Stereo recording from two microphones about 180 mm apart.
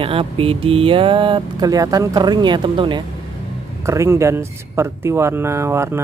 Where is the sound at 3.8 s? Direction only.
15° right (ahead or behind).